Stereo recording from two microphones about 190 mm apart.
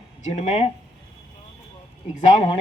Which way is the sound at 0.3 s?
35° left (ahead or behind).